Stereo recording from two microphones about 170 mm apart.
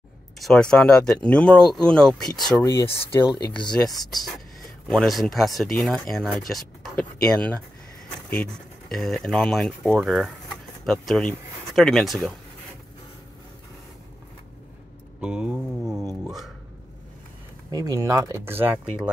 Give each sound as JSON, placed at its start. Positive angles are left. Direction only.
{"t": 0.4, "sound": "speech", "side_deg": 5}
{"t": 2.5, "sound": "speech", "side_deg": 15}
{"t": 3.3, "sound": "speech", "side_deg": 25}
{"t": 4.8, "sound": "speech", "side_deg": 0}
{"t": 15.1, "sound": "a sound", "side_deg": -5}
{"t": 17.6, "sound": "speech", "side_deg": -20}